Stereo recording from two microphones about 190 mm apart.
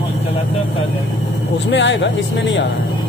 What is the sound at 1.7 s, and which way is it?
Speech, 70° left (ahead or behind).